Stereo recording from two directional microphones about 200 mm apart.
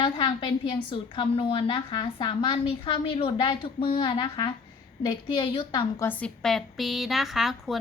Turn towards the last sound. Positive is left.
turn(degrees=0)  # may be behind; listen again after turning